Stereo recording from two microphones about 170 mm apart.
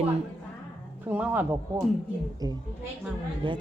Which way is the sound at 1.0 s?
10° right (ahead or behind).